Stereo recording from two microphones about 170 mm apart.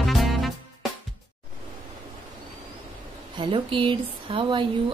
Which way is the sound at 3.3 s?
30° right (ahead or behind).